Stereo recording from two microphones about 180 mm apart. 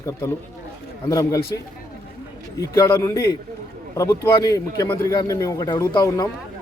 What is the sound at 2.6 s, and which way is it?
A man's voice, 20° left (ahead or behind).